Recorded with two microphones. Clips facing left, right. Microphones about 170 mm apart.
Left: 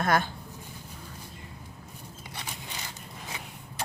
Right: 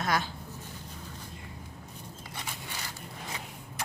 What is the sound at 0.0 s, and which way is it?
Speech, 55° left (ahead or behind).